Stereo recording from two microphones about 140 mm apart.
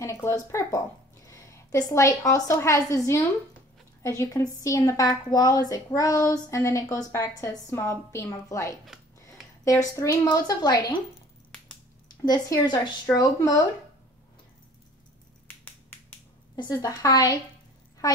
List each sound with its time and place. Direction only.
0.0 s a woman's voice: 20° left (ahead or behind)
9.9 s a woman's voice: 25° left (ahead or behind)
12.3 s a woman's voice: 25° left (ahead or behind)
15.4 s finger snapping: 15° left (ahead or behind)
16.5 s a woman's voice: 30° left (ahead or behind)